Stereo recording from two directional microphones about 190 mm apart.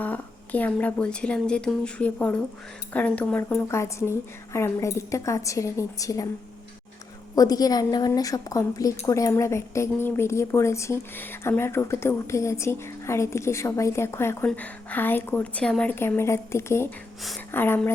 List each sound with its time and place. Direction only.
0.0 s a woman's voice: 10° left (ahead or behind)
7.3 s a woman's voice: 20° left (ahead or behind)